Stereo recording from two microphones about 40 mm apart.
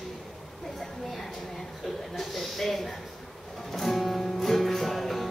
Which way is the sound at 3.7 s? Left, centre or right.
Centre.